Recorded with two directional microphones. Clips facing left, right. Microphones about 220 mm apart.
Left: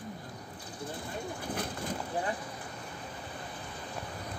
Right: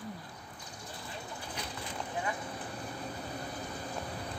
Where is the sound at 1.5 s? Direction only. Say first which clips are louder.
Left 7 dB; 50° left (ahead or behind).